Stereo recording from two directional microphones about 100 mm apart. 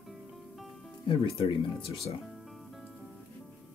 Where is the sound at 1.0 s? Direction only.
60° left (ahead or behind).